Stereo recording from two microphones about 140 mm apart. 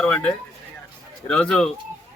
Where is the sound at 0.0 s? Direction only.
5° left (ahead or behind).